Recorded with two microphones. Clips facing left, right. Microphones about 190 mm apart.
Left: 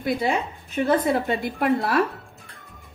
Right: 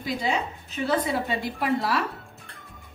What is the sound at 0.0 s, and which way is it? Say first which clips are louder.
A woman's voice: left 4 dB; 55° left (ahead or behind).